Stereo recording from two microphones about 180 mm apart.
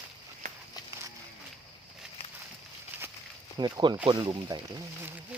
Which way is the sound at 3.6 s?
25° right (ahead or behind).